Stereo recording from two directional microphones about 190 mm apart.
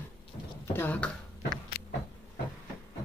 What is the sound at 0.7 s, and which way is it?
Speech, 10° left (ahead or behind).